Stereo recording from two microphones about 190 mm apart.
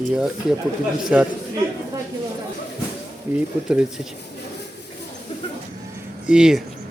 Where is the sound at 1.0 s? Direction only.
5° right (ahead or behind).